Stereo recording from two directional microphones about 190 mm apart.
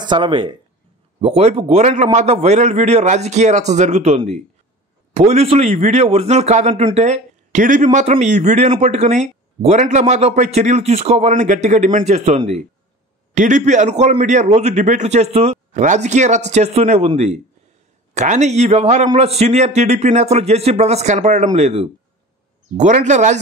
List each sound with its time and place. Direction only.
0.0 s a man's voice: 25° right (ahead or behind)